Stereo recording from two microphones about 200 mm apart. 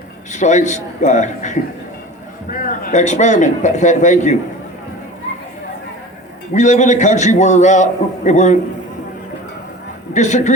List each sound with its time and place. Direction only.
0.3 s a man's voice: 35° left (ahead or behind)
6.5 s a man's voice: 35° left (ahead or behind)
10.2 s a man's voice: 35° left (ahead or behind)